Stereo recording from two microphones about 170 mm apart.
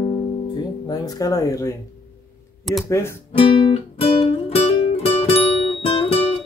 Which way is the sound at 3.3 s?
30° left (ahead or behind).